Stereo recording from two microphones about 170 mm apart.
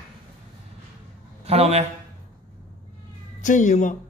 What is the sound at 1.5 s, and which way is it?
Speech, 40° right (ahead or behind).